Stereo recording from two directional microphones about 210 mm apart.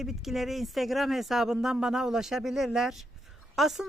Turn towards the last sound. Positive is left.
turn(degrees=0)  # may be behind; listen again after turning